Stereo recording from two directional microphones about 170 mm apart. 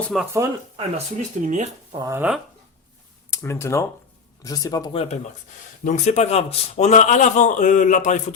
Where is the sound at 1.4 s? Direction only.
40° right (ahead or behind).